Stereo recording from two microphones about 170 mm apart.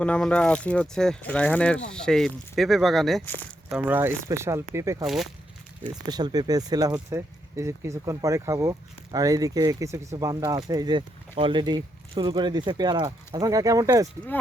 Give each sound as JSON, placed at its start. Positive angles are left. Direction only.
{"t": 0.0, "sound": "speech", "side_deg": 5}
{"t": 3.7, "sound": "speech", "side_deg": -10}
{"t": 5.0, "sound": "speech", "side_deg": 0}
{"t": 6.1, "sound": "speech", "side_deg": -25}